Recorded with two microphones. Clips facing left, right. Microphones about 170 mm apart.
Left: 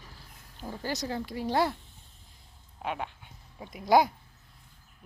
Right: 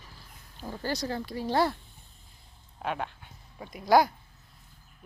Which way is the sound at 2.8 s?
5° left (ahead or behind).